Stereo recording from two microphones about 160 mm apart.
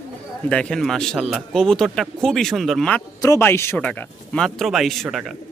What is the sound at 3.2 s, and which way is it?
Speech, 15° left (ahead or behind).